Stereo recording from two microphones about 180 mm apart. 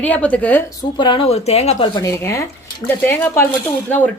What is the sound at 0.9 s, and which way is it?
A woman's voice, 25° left (ahead or behind).